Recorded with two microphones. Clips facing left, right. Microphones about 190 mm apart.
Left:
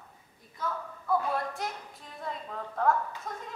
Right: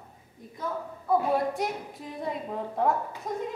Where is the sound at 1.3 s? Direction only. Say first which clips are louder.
Right 6 dB; 20° right (ahead or behind).